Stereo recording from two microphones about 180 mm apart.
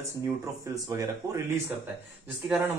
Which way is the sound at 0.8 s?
20° right (ahead or behind).